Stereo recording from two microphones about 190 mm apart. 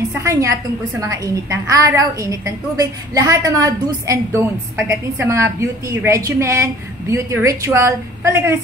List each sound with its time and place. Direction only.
0.1 s a woman's voice: 15° right (ahead or behind)